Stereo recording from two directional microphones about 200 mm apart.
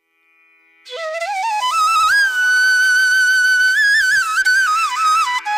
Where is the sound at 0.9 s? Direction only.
Centre (ahead or behind).